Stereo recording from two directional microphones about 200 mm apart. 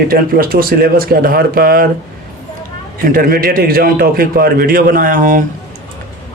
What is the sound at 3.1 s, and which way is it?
Speech, 45° right (ahead or behind).